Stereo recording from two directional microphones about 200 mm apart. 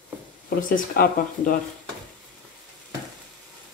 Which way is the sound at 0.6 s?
45° left (ahead or behind).